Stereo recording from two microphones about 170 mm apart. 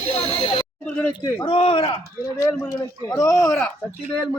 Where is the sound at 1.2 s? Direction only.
25° left (ahead or behind).